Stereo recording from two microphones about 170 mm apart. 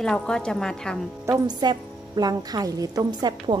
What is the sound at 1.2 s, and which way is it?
A woman's voice, 20° right (ahead or behind).